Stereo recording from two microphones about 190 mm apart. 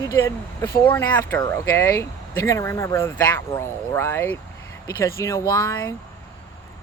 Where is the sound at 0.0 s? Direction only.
15° left (ahead or behind).